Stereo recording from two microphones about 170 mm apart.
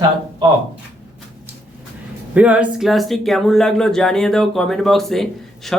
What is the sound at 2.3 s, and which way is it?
Speech, 10° right (ahead or behind).